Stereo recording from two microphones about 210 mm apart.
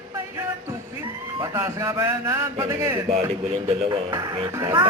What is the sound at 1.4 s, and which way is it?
Speech, 15° right (ahead or behind).